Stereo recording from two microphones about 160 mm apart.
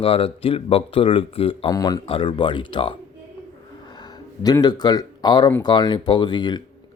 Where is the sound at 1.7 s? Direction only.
25° left (ahead or behind).